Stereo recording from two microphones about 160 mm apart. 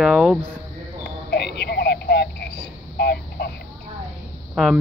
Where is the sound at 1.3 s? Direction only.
90° left.